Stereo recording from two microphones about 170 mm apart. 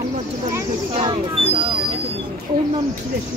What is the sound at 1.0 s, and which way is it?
Speech, 30° right (ahead or behind).